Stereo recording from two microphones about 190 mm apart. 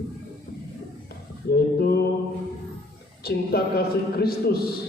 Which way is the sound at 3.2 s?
55° left (ahead or behind).